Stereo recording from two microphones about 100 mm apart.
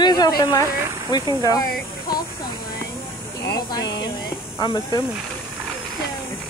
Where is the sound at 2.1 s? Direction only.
45° left (ahead or behind).